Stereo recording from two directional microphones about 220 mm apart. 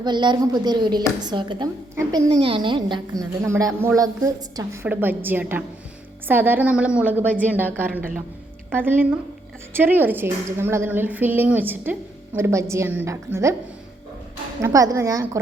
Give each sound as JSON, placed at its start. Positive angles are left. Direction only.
{"t": 0.0, "sound": "a woman's voice", "side_deg": -20}
{"t": 14.6, "sound": "a woman's voice", "side_deg": -15}